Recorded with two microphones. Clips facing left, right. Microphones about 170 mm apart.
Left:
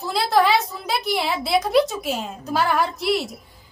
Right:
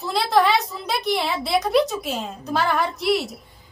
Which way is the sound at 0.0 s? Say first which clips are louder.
Even; centre (ahead or behind).